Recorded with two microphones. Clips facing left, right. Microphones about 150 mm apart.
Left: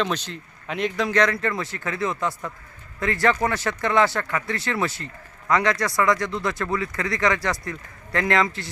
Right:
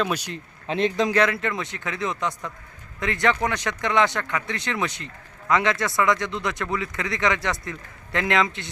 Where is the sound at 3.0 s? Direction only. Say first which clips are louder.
Left 2 dB; 20° right (ahead or behind).